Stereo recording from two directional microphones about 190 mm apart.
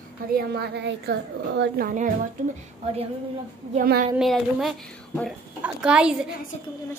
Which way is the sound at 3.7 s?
50° right (ahead or behind).